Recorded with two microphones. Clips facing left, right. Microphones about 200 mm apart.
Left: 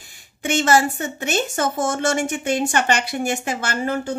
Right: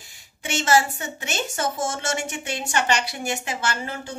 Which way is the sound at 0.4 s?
55° left (ahead or behind).